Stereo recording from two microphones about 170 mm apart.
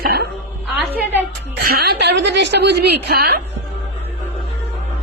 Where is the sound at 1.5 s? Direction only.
70° right (ahead or behind).